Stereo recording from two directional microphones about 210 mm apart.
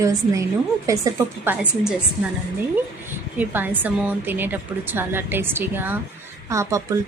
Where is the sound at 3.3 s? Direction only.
10° right (ahead or behind).